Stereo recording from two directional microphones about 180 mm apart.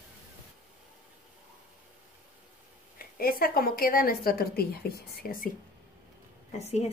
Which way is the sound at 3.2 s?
55° left (ahead or behind).